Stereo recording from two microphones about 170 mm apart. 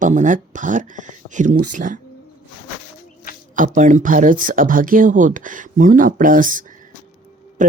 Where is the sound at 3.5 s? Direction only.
50° right (ahead or behind).